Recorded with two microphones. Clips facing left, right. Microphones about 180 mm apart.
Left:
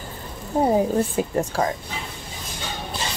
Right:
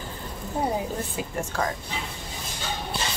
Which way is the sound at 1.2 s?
40° left (ahead or behind).